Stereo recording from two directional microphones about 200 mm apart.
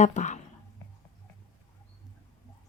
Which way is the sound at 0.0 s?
35° left (ahead or behind).